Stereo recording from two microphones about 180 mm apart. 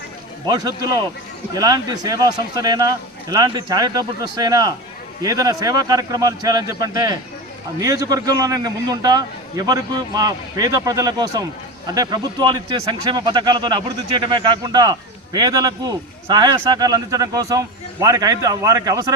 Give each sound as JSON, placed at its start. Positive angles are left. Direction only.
{"t": 0.4, "sound": "speech", "side_deg": -20}